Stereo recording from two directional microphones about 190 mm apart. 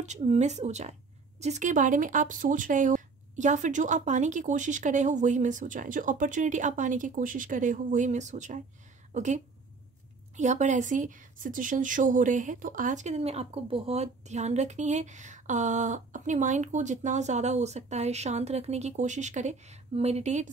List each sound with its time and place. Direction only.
0.0 s a woman's voice: 35° right (ahead or behind)